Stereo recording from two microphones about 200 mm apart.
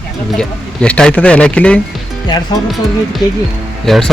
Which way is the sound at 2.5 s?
20° left (ahead or behind).